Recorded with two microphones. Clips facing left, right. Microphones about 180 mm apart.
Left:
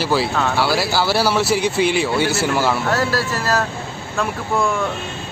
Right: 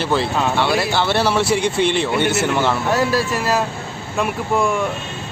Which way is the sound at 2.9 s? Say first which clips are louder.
Right 2 dB; 15° right (ahead or behind).